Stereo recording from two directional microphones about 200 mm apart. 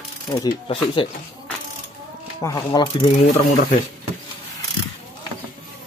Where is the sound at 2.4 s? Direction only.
20° left (ahead or behind).